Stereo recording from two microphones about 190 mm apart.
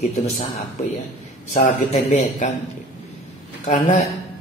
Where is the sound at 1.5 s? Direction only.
35° left (ahead or behind).